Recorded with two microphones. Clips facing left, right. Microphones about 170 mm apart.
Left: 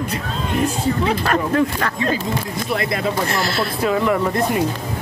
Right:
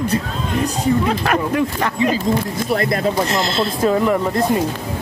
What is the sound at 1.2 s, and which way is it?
Speech, 15° right (ahead or behind).